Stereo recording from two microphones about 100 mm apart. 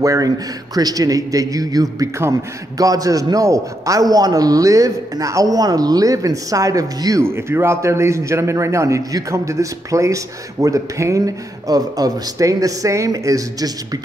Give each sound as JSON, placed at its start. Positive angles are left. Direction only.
{"t": 0.0, "sound": "a man's voice", "side_deg": -35}
{"t": 7.2, "sound": "a man's voice", "side_deg": -25}